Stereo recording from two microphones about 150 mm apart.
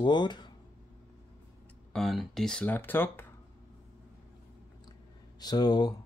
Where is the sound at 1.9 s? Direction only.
Centre (ahead or behind).